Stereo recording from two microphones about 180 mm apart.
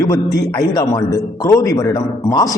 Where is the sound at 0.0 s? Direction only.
20° left (ahead or behind).